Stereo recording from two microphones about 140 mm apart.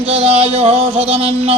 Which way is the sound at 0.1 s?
45° right (ahead or behind).